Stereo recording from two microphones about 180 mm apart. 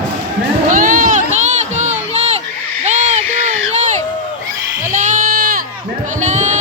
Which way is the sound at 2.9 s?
40° right (ahead or behind).